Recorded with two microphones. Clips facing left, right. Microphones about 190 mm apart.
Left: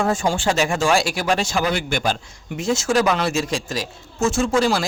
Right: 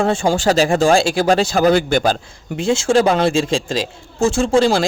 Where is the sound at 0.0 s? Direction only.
30° right (ahead or behind).